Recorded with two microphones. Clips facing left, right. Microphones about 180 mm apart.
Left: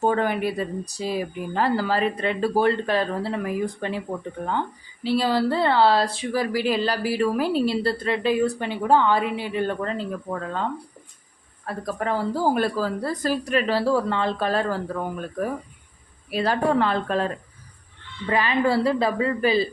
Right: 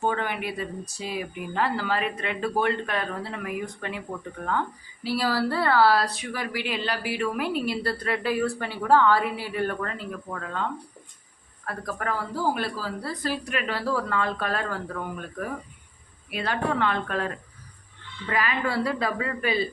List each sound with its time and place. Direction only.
0.0 s speech: 40° left (ahead or behind)
5.0 s speech: 20° left (ahead or behind)
11.6 s speech: 25° left (ahead or behind)
12.5 s speech: 45° left (ahead or behind); by 19.6 s 30° left (ahead or behind)